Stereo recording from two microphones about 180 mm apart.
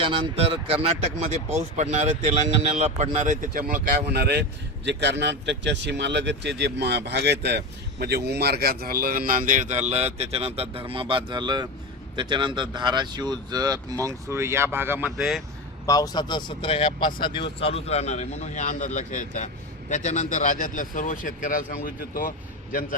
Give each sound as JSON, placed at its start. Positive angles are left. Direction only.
{"t": 0.0, "sound": "speech", "side_deg": -30}
{"t": 1.5, "sound": "speech", "side_deg": -40}
{"t": 4.9, "sound": "speech", "side_deg": -75}
{"t": 15.9, "sound": "a man's voice", "side_deg": 20}